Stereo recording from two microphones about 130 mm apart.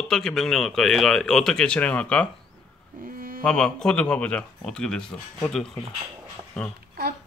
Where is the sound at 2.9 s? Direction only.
90° right.